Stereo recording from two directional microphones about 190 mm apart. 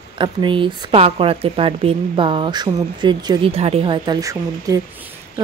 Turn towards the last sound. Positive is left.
turn(degrees=-15)  # may be behind; listen again after turning